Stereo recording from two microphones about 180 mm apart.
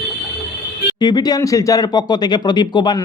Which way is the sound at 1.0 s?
25° left (ahead or behind).